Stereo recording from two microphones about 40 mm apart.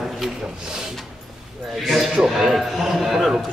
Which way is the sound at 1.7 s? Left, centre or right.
Centre.